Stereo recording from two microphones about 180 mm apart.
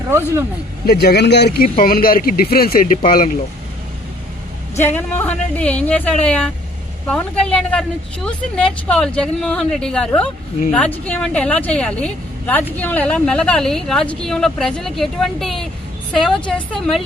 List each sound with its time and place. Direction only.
0.9 s speech: 60° left (ahead or behind)
1.8 s speech: 55° left (ahead or behind)
4.8 s speech: 10° left (ahead or behind)